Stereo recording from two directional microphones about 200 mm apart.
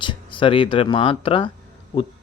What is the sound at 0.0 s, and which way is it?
Speech, 25° left (ahead or behind).